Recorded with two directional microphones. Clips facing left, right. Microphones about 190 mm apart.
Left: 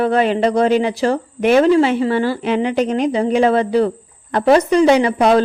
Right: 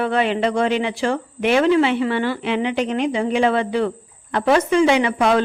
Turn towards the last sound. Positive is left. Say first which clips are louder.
# left 4 dB
turn(degrees=35)  # may be behind; listen again after turning